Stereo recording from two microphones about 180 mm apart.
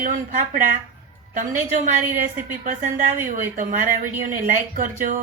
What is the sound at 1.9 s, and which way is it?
A woman's voice, 45° right (ahead or behind).